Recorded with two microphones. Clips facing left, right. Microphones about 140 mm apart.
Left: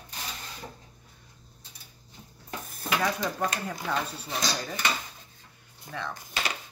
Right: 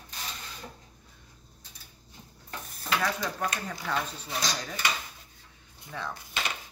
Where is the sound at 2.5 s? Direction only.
10° left (ahead or behind).